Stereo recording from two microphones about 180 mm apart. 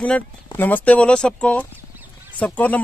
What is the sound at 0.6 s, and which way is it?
Speech, 10° left (ahead or behind).